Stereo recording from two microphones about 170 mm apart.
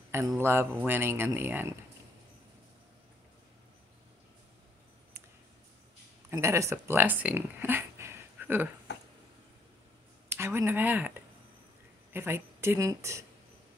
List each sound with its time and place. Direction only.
0.4 s speech: 15° right (ahead or behind)
6.3 s speech: 15° right (ahead or behind)
8.9 s a sound: 90° left
10.3 s speech: 15° right (ahead or behind)